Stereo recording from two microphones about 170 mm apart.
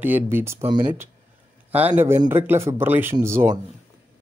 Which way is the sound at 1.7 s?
10° right (ahead or behind).